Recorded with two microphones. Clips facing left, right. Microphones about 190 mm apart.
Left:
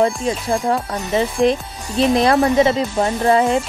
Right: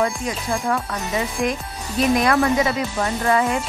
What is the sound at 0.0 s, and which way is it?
Speech, 30° left (ahead or behind).